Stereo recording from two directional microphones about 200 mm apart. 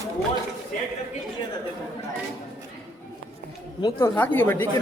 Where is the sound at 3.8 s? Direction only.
10° left (ahead or behind).